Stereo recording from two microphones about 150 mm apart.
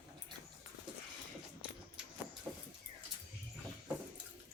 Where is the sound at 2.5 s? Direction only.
10° right (ahead or behind).